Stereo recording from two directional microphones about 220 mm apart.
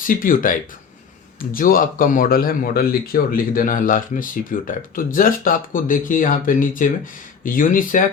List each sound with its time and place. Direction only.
0.0 s speech: 40° left (ahead or behind)